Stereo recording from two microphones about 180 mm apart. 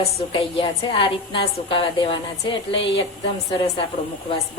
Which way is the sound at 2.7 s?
90° left.